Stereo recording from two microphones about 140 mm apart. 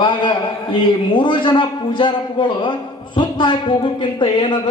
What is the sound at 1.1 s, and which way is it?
A man's voice, 35° left (ahead or behind).